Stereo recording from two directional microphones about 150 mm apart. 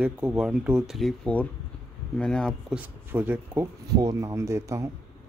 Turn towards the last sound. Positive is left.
turn(degrees=-20)  # may be behind; listen again after turning